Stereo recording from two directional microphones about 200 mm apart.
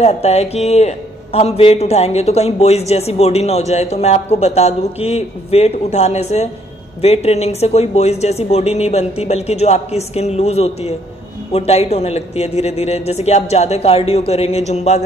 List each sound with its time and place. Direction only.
0.0 s a man's voice: 30° left (ahead or behind)